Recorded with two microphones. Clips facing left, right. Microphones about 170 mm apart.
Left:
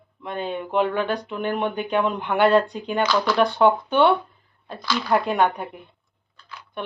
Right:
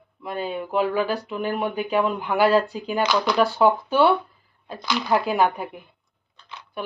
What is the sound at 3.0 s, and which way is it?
Speech, 15° right (ahead or behind).